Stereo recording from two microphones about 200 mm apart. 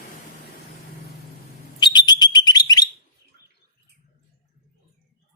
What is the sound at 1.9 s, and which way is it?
Bird, 20° left (ahead or behind).